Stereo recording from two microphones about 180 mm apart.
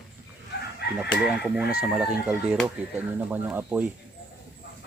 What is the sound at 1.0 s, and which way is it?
Speech, 5° right (ahead or behind).